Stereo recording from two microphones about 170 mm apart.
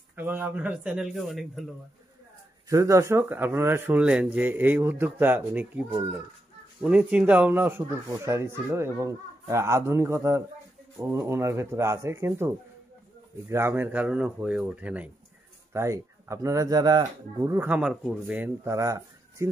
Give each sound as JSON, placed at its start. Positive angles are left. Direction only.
{"t": 0.1, "sound": "speech", "side_deg": -10}
{"t": 2.7, "sound": "speech", "side_deg": -15}